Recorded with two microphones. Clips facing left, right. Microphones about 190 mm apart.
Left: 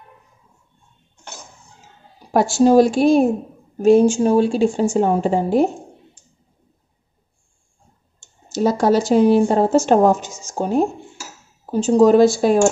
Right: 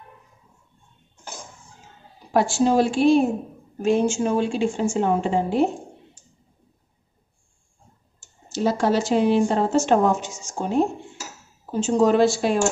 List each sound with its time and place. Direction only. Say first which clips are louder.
2.3 s speech: left 6 dB; 40° left (ahead or behind)
8.5 s speech: left 5 dB; 40° left (ahead or behind)